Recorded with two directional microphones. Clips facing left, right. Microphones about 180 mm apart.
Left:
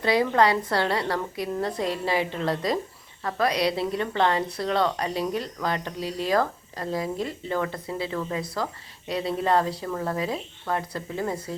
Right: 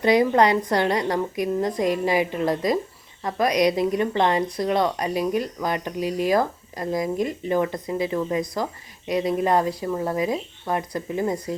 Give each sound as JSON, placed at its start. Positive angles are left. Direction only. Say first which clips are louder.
{"t": 0.0, "sound": "a woman's voice", "louder": "right 3 dB", "side_deg": -15}